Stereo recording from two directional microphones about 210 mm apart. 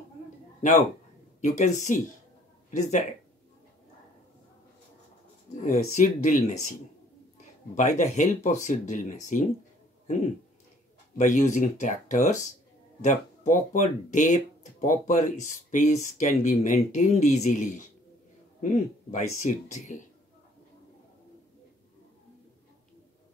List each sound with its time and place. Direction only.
0.6 s speech: 35° left (ahead or behind)
5.7 s speech: 35° left (ahead or behind)
7.7 s speech: 35° left (ahead or behind)
11.1 s a man's voice: 35° left (ahead or behind)